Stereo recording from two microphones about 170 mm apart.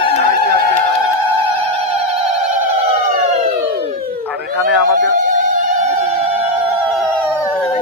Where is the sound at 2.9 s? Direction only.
40° right (ahead or behind).